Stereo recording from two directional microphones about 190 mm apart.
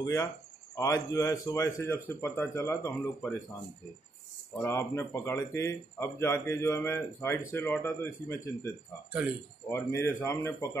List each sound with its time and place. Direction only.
0.0 s speech: 15° left (ahead or behind)
4.6 s speech: 15° left (ahead or behind)
9.7 s speech: 15° left (ahead or behind)